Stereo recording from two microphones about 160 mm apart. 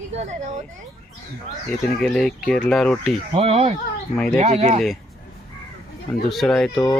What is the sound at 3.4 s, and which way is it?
Speech, 40° right (ahead or behind).